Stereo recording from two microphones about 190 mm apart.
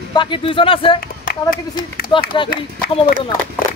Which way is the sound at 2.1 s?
25° left (ahead or behind).